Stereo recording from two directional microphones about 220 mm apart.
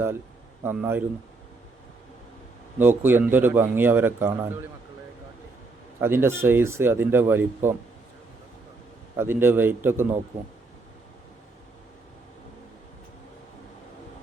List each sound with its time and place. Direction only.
0.6 s speech: 10° right (ahead or behind)
2.8 s speech: 10° right (ahead or behind)
6.0 s speech: 10° right (ahead or behind)
9.1 s speech: 10° right (ahead or behind)